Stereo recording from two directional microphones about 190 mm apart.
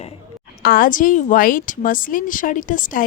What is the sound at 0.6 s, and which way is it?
A woman's voice, 50° left (ahead or behind).